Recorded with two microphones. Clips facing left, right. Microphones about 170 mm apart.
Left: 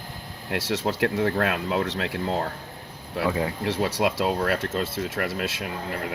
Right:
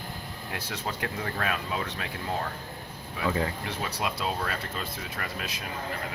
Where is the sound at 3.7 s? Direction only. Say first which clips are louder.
Left 8 dB; 90° left.